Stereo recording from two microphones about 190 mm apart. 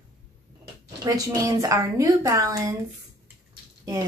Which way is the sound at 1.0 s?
15° right (ahead or behind).